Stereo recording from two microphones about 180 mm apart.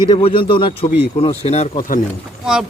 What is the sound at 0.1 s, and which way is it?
A man's voice, 30° left (ahead or behind).